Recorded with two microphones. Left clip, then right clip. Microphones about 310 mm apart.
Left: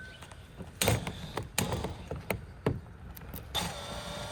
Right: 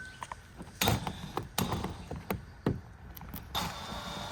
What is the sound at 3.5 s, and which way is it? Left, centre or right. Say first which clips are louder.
Vehicle: left 1 dB; centre.